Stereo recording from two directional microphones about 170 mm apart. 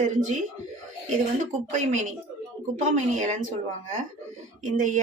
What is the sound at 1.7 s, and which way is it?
A woman's voice, 45° right (ahead or behind).